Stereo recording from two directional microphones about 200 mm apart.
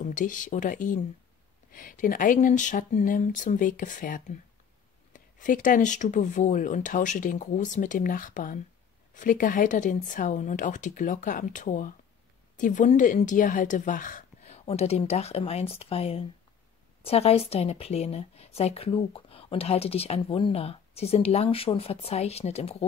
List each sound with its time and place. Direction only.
0.0 s a woman's voice: 40° left (ahead or behind)